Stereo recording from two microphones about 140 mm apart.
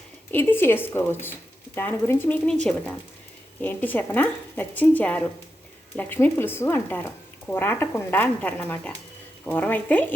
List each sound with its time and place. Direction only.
0.3 s a woman's voice: 15° left (ahead or behind)
3.6 s a woman's voice: 15° left (ahead or behind)